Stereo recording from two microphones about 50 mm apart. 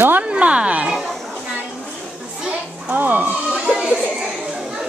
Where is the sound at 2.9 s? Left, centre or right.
Right.